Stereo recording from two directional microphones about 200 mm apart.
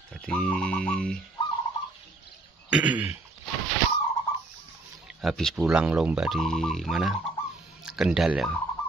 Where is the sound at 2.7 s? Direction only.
5° right (ahead or behind).